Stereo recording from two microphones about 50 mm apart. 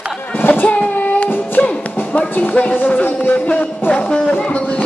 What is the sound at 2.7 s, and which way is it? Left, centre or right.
Speech, left.